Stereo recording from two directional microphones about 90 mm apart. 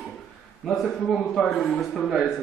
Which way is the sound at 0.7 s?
5° left (ahead or behind).